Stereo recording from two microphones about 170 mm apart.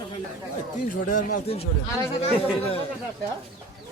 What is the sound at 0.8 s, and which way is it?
Speech, 50° left (ahead or behind).